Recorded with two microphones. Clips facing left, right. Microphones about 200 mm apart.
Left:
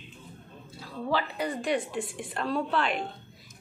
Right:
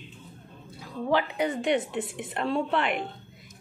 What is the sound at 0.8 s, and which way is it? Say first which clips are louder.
A woman's voice: right 4 dB; 15° right (ahead or behind).